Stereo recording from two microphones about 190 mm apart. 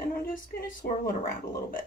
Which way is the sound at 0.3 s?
50° left (ahead or behind).